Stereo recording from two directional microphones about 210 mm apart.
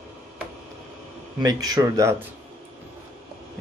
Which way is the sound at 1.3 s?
20° right (ahead or behind).